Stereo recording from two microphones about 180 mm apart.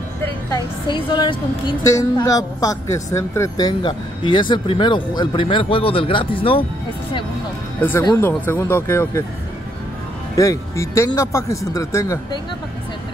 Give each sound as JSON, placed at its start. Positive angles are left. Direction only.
{"t": 0.5, "sound": "a woman's voice", "side_deg": 30}
{"t": 8.2, "sound": "speech", "side_deg": 10}
{"t": 10.3, "sound": "speech", "side_deg": 20}